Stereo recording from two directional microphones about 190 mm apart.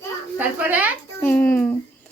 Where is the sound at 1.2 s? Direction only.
10° left (ahead or behind).